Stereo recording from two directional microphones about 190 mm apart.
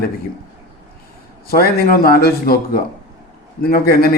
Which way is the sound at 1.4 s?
50° left (ahead or behind).